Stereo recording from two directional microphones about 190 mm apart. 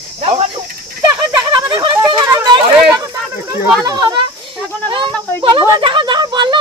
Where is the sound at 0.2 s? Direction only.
30° right (ahead or behind).